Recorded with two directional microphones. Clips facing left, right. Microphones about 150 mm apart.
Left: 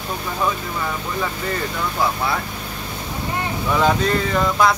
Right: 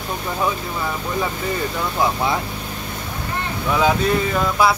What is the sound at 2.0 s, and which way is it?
Speech, 20° right (ahead or behind).